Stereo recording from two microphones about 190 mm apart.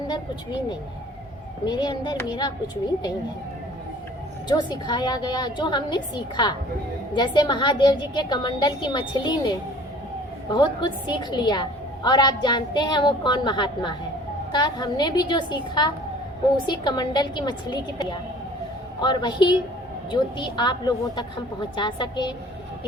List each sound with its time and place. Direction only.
0.1 s a woman's voice: 25° left (ahead or behind)
4.4 s a woman's voice: 20° left (ahead or behind)